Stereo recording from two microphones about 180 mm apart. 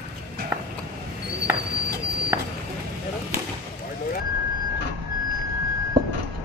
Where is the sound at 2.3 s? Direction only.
15° right (ahead or behind).